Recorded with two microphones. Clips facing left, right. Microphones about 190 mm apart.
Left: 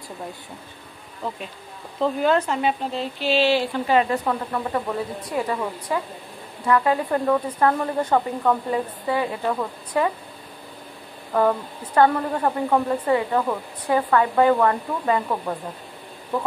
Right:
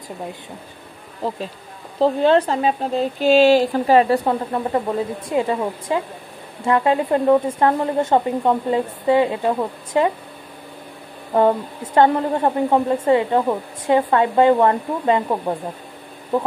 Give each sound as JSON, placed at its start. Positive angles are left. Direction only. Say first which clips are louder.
{"t": 2.0, "sound": "speech", "louder": "right 5 dB", "side_deg": -30}
{"t": 11.3, "sound": "speech", "louder": "right 4 dB", "side_deg": -25}